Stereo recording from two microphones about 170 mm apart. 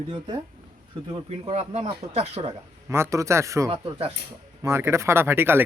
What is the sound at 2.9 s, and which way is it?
Speech, 15° right (ahead or behind).